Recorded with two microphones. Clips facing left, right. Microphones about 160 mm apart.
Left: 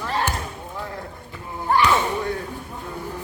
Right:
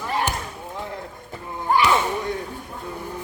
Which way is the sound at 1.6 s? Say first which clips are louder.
Even; 10° right (ahead or behind).